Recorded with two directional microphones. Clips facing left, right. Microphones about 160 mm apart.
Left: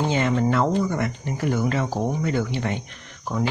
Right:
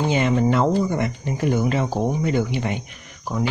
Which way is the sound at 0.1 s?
15° right (ahead or behind).